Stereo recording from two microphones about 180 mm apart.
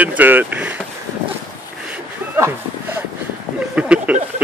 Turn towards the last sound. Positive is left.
turn(degrees=-5)  # may be behind; listen again after turning